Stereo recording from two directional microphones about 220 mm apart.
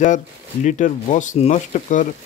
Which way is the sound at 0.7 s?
35° left (ahead or behind).